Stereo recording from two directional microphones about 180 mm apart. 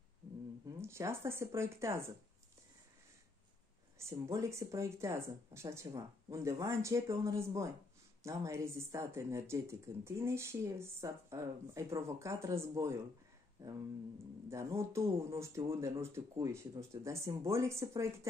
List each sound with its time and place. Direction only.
0.7 s speech: 15° right (ahead or behind)
4.0 s speech: 15° right (ahead or behind)